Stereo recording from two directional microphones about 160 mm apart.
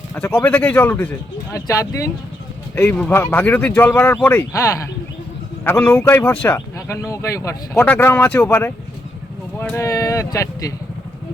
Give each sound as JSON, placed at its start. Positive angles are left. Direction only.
{"t": 0.2, "sound": "speech", "side_deg": 10}
{"t": 5.9, "sound": "speech", "side_deg": 15}
{"t": 6.7, "sound": "a sound", "side_deg": 20}
{"t": 7.1, "sound": "speech", "side_deg": 20}